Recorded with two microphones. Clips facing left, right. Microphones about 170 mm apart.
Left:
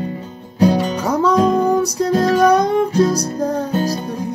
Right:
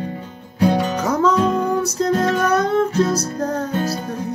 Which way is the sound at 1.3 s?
35° left (ahead or behind).